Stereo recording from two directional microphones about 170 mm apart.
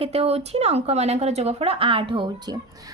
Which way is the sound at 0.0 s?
35° right (ahead or behind).